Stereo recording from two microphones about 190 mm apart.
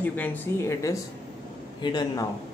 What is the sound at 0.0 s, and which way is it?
A man's voice, 10° left (ahead or behind).